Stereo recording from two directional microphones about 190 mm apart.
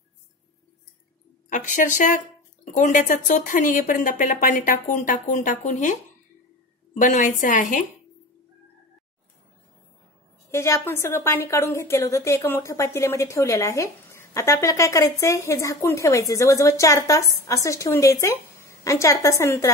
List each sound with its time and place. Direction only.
1.5 s speech: 45° left (ahead or behind)
10.5 s a woman's voice: 15° left (ahead or behind)